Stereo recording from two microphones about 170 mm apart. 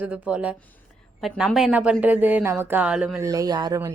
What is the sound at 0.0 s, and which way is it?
A woman's voice, 10° right (ahead or behind).